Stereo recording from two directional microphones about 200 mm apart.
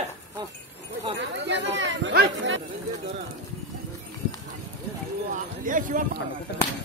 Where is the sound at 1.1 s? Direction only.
65° right (ahead or behind).